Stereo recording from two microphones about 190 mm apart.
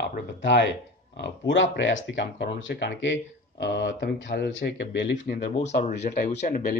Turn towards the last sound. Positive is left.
turn(degrees=40)  # may be behind; listen again after turning